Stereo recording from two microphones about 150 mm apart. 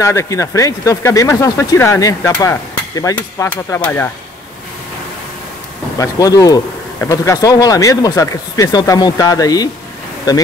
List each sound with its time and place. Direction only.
0.0 s speech: 20° left (ahead or behind)
5.9 s speech: 25° left (ahead or behind)